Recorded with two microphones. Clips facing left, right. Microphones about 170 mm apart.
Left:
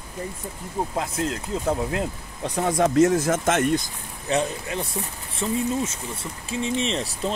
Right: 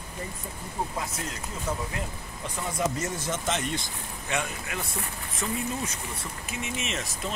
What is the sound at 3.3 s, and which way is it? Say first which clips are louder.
Speech: left 9 dB; 50° left (ahead or behind).